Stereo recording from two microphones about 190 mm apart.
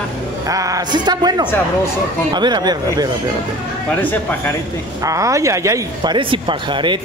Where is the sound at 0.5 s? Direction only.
15° right (ahead or behind).